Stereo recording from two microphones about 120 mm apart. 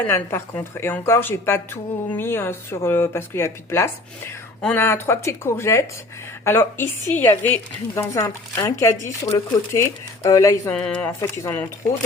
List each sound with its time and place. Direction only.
0.1 s a woman's voice: 20° left (ahead or behind)
10.7 s speech: 10° left (ahead or behind)
11.2 s a woman's voice: 20° left (ahead or behind)